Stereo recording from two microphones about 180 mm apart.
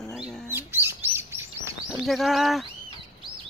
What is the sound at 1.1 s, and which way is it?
Chirp, 15° right (ahead or behind).